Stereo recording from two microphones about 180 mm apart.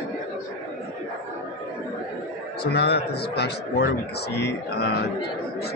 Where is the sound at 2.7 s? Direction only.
65° left (ahead or behind).